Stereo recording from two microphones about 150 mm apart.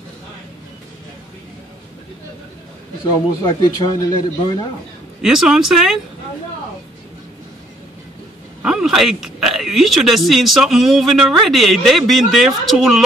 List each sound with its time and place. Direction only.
3.4 s a man's voice: 25° left (ahead or behind)
5.2 s speech: 5° right (ahead or behind)
8.6 s speech: 5° right (ahead or behind)